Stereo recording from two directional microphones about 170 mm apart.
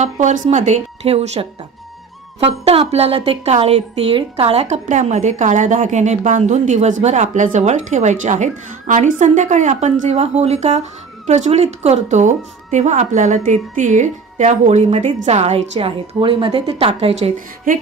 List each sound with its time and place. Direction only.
0.0 s a woman's voice: 45° right (ahead or behind)